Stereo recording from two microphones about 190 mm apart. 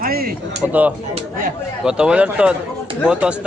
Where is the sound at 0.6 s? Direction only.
10° right (ahead or behind).